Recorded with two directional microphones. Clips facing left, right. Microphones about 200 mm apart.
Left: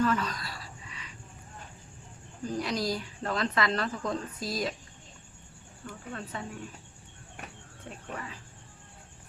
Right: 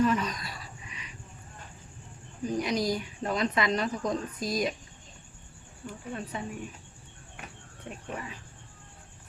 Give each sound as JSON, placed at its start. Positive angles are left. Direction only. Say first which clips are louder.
{"t": 0.0, "sound": "a sound", "louder": "right 2 dB", "side_deg": -15}
{"t": 2.4, "sound": "speech", "louder": "right 3 dB", "side_deg": -15}
{"t": 5.8, "sound": "speech", "louder": "right 3 dB", "side_deg": -15}
{"t": 7.9, "sound": "speech", "louder": "right 3 dB", "side_deg": -15}